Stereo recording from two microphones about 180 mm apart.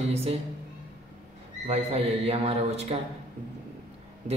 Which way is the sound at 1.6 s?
35° right (ahead or behind).